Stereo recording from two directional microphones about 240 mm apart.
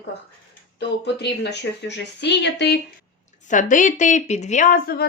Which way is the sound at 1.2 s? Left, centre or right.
Left.